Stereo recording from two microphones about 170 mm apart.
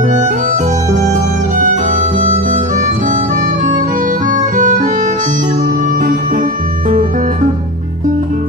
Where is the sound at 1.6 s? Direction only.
45° right (ahead or behind).